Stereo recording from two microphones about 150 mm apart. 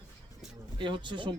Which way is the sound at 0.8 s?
30° right (ahead or behind).